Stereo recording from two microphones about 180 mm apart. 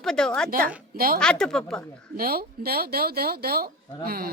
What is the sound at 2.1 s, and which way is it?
Speech, 55° right (ahead or behind).